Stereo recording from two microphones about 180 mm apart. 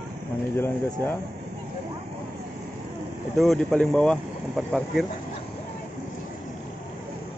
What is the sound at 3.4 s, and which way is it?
Speech, centre (ahead or behind).